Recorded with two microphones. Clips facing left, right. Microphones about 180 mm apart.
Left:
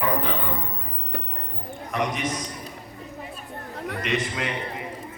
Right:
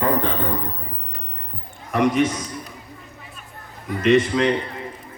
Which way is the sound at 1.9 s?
50° right (ahead or behind).